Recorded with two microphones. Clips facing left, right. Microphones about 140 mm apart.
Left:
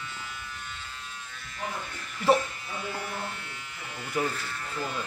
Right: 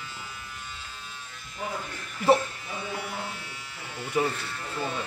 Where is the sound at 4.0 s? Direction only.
5° right (ahead or behind).